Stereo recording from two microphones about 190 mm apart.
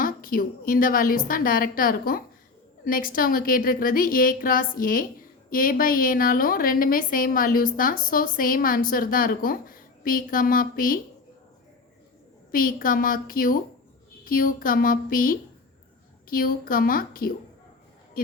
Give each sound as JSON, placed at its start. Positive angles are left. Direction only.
{"t": 0.0, "sound": "a woman's voice", "side_deg": 50}
{"t": 12.5, "sound": "a woman's voice", "side_deg": 50}